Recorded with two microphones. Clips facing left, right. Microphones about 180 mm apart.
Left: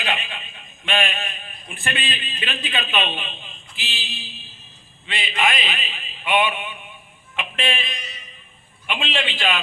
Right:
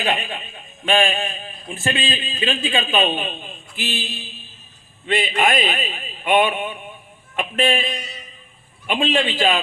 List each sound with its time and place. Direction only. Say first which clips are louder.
0.0 s a man's voice: right 5 dB; 45° right (ahead or behind)
3.1 s a man's voice: right 7 dB; 45° right (ahead or behind)